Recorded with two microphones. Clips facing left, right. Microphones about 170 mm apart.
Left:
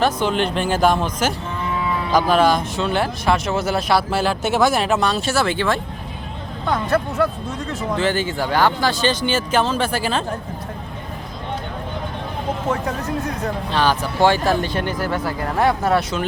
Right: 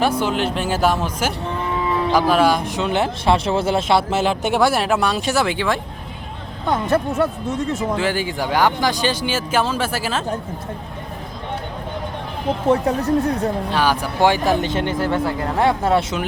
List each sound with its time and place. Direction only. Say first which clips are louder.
0.0 s speech: even; 10° right (ahead or behind)
6.7 s speech: right 1 dB; 25° right (ahead or behind)
7.9 s speech: left 1 dB; 10° right (ahead or behind)
12.7 s speech: right 6 dB; 30° right (ahead or behind)
13.7 s speech: even; 10° right (ahead or behind)